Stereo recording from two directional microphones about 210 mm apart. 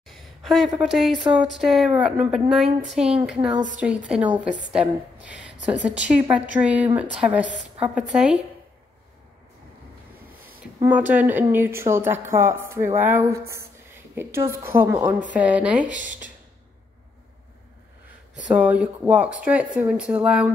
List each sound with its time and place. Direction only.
0.1 s a sound: centre (ahead or behind)
0.7 s a woman's voice: centre (ahead or behind)
10.8 s a woman's voice: 10° right (ahead or behind)
15.8 s speech: 35° right (ahead or behind)
18.5 s a woman's voice: 5° right (ahead or behind)